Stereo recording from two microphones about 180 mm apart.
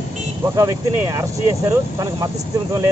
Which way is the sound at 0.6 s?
20° right (ahead or behind).